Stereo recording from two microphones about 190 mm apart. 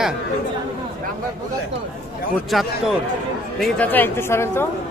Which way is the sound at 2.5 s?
Centre (ahead or behind).